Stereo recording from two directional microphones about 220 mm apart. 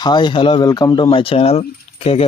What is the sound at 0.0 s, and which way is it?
Speech, 20° left (ahead or behind).